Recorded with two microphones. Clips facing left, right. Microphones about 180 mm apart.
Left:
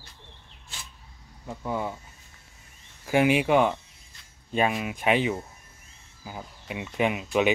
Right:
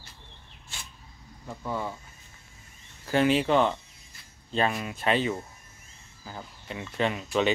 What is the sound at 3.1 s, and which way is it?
Speech, 10° left (ahead or behind).